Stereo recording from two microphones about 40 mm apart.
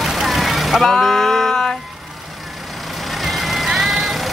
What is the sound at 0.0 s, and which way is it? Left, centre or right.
Vehicle, centre.